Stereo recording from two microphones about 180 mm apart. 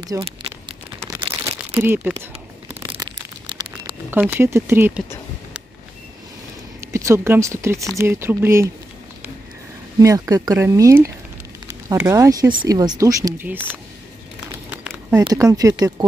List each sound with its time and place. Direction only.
0.2 s crumpling: 30° right (ahead or behind)
1.0 s crumpling: 20° right (ahead or behind)
3.0 s a sound: 25° right (ahead or behind)
4.1 s speech: 10° right (ahead or behind)
6.9 s speech: 15° right (ahead or behind)
9.9 s speech: 20° right (ahead or behind)
14.7 s a sound: 10° right (ahead or behind)
15.2 s speech: 20° right (ahead or behind)